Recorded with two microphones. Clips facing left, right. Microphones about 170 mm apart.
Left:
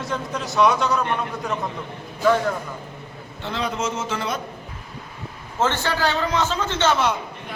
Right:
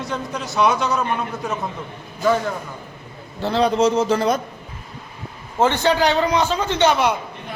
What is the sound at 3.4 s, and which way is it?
Speech, 35° right (ahead or behind).